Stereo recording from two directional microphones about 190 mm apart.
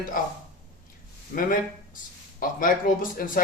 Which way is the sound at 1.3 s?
45° left (ahead or behind).